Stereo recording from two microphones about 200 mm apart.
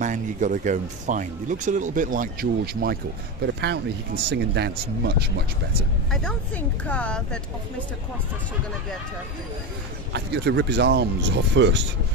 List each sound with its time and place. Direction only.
0.0 s speech: 40° right (ahead or behind); by 5.8 s 55° right (ahead or behind)
6.2 s a woman's voice: 5° left (ahead or behind)
10.1 s speech: 60° right (ahead or behind)